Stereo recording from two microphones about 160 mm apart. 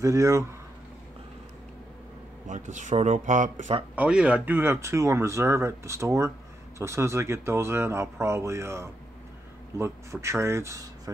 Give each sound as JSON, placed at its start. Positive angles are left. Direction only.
{"t": 0.0, "sound": "speech", "side_deg": -20}
{"t": 2.4, "sound": "speech", "side_deg": -50}
{"t": 3.9, "sound": "speech", "side_deg": -5}